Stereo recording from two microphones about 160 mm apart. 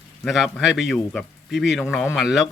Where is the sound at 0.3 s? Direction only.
Centre (ahead or behind).